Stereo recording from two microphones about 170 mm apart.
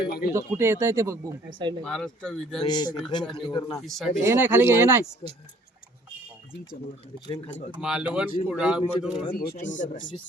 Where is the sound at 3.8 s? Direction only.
Centre (ahead or behind).